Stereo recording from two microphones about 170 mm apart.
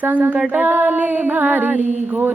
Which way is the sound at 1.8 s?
45° right (ahead or behind).